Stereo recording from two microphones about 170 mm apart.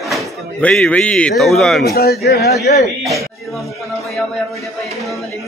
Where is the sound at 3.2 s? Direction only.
Centre (ahead or behind).